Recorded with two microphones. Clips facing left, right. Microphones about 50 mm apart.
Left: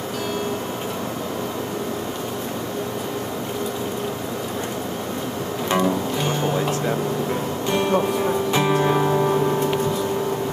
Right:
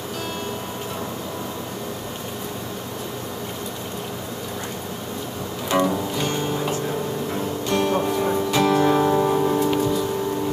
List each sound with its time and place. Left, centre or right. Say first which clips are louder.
5.9 s music: left 2 dB; centre
7.7 s music: left 1 dB; centre
9.0 s music: even; centre